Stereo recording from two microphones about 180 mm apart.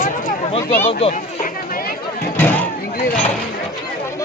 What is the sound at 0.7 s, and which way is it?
Speech, 35° left (ahead or behind).